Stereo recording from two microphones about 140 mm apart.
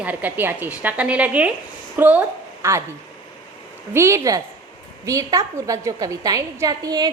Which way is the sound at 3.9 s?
20° right (ahead or behind).